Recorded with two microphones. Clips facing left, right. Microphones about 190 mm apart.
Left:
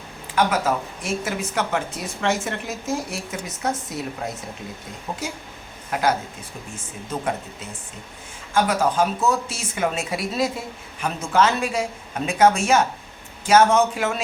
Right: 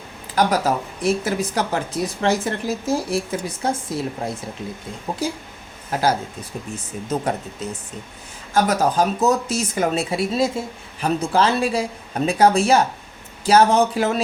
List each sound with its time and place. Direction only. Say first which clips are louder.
0.3 s a woman's voice: right 2 dB; 35° right (ahead or behind)
5.1 s a woman's voice: right 5 dB; 35° right (ahead or behind)
8.5 s a woman's voice: right 2 dB; 40° right (ahead or behind)